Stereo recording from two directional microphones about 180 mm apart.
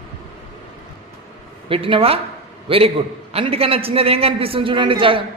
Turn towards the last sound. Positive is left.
turn(degrees=-30)  # may be behind; listen again after turning